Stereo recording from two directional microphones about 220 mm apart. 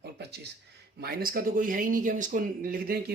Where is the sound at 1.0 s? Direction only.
40° right (ahead or behind).